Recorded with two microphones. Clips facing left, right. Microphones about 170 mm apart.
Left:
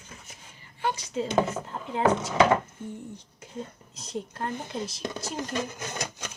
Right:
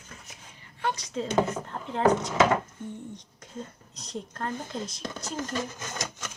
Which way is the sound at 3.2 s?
5° left (ahead or behind).